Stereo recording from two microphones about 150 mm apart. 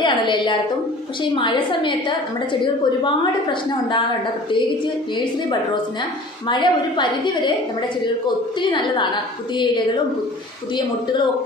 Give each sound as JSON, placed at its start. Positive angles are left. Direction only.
{"t": 0.0, "sound": "a woman's voice", "side_deg": 30}
{"t": 6.4, "sound": "a woman's voice", "side_deg": 30}
{"t": 8.5, "sound": "a woman's voice", "side_deg": 30}